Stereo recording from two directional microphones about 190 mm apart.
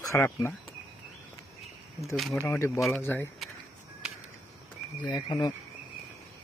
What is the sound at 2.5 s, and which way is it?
Speech, 15° left (ahead or behind).